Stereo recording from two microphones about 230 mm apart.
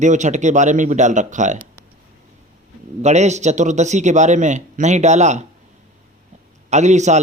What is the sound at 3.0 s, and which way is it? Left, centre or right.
A man's voice, right.